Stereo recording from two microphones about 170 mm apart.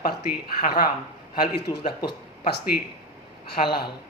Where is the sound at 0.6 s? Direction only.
60° left (ahead or behind).